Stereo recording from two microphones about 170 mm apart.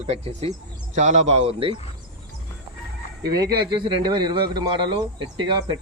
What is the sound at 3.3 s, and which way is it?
Speech, 25° right (ahead or behind).